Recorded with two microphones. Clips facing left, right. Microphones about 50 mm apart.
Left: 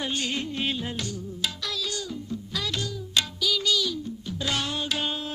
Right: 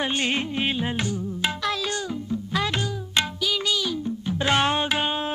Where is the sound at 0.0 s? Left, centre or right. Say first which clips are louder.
Right 5 dB; right.